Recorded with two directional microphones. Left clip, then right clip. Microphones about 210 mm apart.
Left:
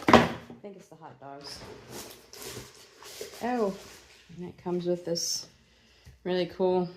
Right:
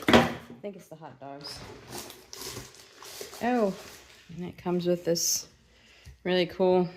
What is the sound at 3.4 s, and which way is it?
Speech, 50° right (ahead or behind).